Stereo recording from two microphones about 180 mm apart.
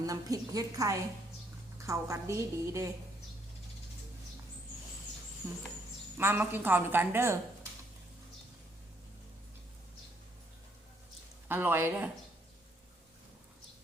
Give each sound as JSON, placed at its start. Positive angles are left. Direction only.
{"t": 0.0, "sound": "a woman's voice", "side_deg": -20}
{"t": 5.4, "sound": "a woman's voice", "side_deg": -20}
{"t": 11.4, "sound": "a woman's voice", "side_deg": -10}